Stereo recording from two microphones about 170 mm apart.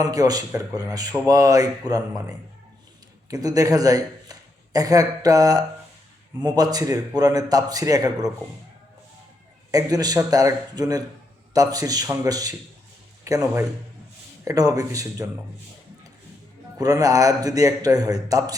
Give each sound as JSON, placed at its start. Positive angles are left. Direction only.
{"t": 0.0, "sound": "a man's voice", "side_deg": -20}
{"t": 3.2, "sound": "a man's voice", "side_deg": -20}
{"t": 9.7, "sound": "a man's voice", "side_deg": -20}
{"t": 16.7, "sound": "a man's voice", "side_deg": -20}